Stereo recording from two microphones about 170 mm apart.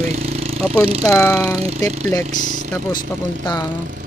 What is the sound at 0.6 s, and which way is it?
Speech, 5° left (ahead or behind).